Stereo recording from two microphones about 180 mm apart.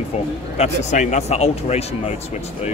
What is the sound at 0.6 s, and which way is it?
Speech, 40° left (ahead or behind).